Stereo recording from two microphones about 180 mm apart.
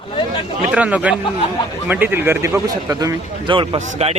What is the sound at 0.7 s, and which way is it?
A man's voice, 5° right (ahead or behind).